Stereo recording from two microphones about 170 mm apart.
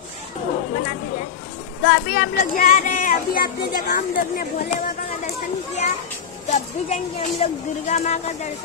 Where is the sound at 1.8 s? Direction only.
75° left (ahead or behind).